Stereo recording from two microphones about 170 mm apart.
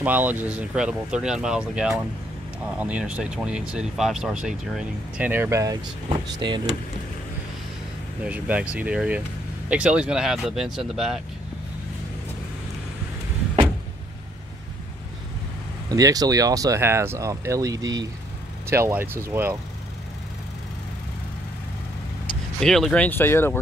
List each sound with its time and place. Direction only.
0.0 s speech: 10° right (ahead or behind)
8.2 s speech: 5° right (ahead or behind)
15.9 s speech: 20° right (ahead or behind)
22.6 s speech: centre (ahead or behind)